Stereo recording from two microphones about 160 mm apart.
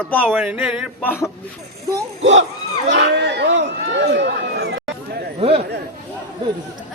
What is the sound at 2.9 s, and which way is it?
Run, 90° right.